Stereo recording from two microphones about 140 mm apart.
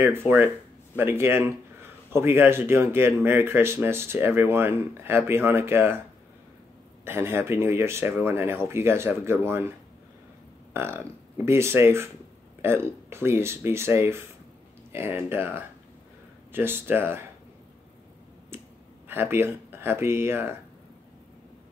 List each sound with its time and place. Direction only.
0.0 s speech: 15° right (ahead or behind)
7.1 s speech: 15° right (ahead or behind)
10.7 s a sound: 15° right (ahead or behind)
11.4 s speech: 20° right (ahead or behind)
18.5 s clicking: 15° right (ahead or behind)
19.0 s speech: 15° right (ahead or behind)